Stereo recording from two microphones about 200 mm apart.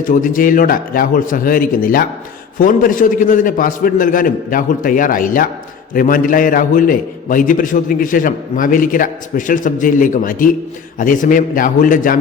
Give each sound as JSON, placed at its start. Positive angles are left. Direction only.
{"t": 0.1, "sound": "a man's voice", "side_deg": 45}